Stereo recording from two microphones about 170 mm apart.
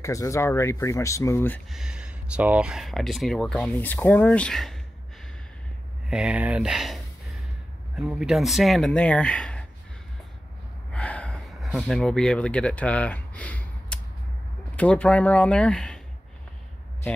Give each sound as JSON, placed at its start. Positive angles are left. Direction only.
{"t": 0.0, "sound": "speech", "side_deg": 20}
{"t": 1.7, "sound": "speech", "side_deg": -5}
{"t": 6.0, "sound": "speech", "side_deg": -5}
{"t": 10.9, "sound": "gasp", "side_deg": 5}
{"t": 14.8, "sound": "speech", "side_deg": 5}